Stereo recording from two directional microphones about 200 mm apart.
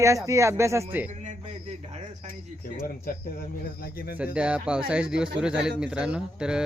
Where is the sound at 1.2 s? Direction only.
35° right (ahead or behind).